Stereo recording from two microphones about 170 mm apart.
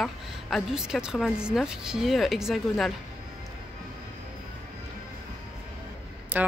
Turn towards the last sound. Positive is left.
turn(degrees=-10)  # may be behind; listen again after turning